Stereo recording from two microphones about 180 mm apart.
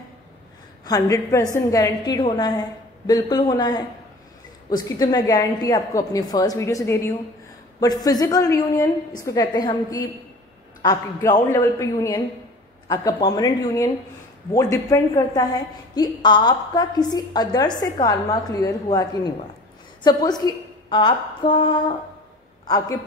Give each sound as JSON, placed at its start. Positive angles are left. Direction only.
{"t": 0.8, "sound": "a woman's voice", "side_deg": 20}